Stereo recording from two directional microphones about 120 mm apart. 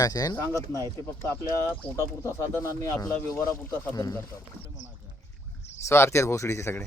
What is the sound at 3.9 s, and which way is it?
Speech, 30° left (ahead or behind).